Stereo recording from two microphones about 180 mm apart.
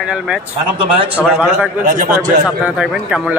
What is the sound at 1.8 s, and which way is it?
Speech, 45° right (ahead or behind).